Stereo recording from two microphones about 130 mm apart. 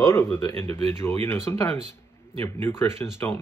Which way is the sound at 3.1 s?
20° left (ahead or behind).